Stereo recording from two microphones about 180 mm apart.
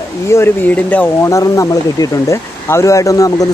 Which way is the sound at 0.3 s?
15° left (ahead or behind).